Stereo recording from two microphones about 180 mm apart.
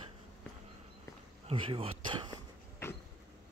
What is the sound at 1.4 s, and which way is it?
Speech, 30° right (ahead or behind).